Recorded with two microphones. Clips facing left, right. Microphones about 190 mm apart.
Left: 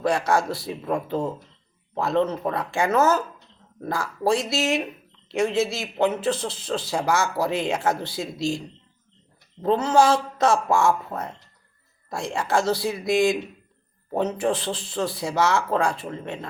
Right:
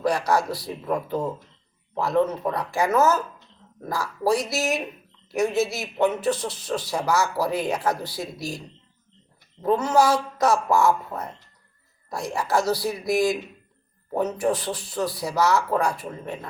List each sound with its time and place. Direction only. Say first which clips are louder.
0.0 s a man's voice: even; 25° left (ahead or behind)
9.6 s a man's voice: left 1 dB; 30° left (ahead or behind)
12.1 s a man's voice: even; 25° left (ahead or behind)